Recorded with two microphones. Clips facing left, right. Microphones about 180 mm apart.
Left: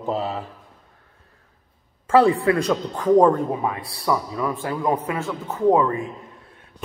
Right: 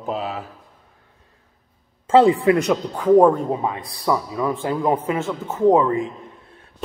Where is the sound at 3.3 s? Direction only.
20° right (ahead or behind).